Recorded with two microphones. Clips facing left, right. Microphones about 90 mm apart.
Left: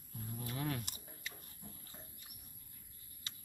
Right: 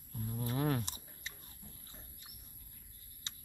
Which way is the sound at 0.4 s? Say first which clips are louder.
Right 6 dB; 35° right (ahead or behind).